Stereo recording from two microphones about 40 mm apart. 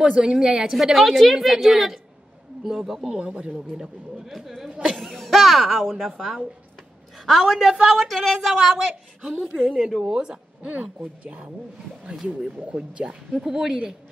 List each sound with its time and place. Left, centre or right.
0.0 s a woman's voice: right
0.9 s a woman's voice: centre
3.1 s speech: right
4.3 s a woman's voice: centre
5.0 s music: centre
5.9 s a woman's voice: centre
9.2 s speech: right
11.2 s speech: right
12.6 s speech: right
13.4 s a woman's voice: centre